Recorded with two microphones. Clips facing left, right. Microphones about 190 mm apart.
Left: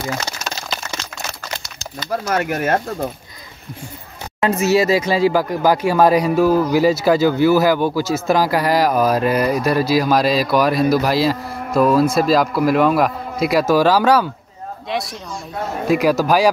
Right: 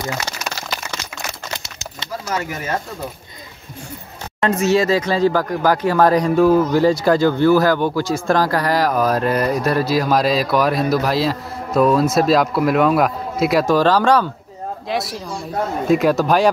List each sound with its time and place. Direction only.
2.2 s speech: 60° left (ahead or behind)
4.4 s a man's voice: 5° left (ahead or behind)